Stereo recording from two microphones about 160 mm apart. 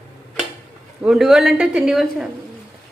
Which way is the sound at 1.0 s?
5° right (ahead or behind).